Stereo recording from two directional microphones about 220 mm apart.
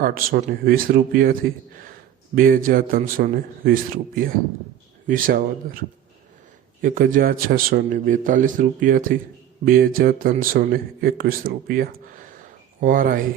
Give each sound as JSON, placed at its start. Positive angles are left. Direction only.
{"t": 0.0, "sound": "a man's voice", "side_deg": -40}
{"t": 6.8, "sound": "a man's voice", "side_deg": -40}